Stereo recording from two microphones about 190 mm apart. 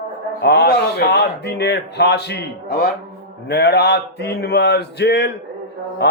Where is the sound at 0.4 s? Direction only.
55° left (ahead or behind).